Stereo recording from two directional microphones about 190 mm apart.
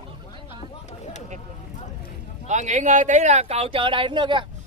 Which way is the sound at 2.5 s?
40° right (ahead or behind).